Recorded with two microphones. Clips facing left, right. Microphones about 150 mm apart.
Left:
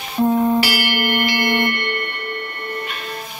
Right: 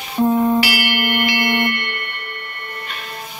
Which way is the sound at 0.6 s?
35° left (ahead or behind).